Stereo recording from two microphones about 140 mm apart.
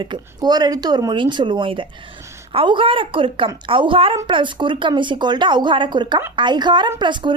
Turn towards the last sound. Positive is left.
turn(degrees=-35)  # may be behind; listen again after turning